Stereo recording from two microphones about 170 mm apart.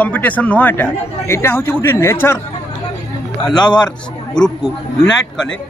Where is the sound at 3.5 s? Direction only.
25° left (ahead or behind).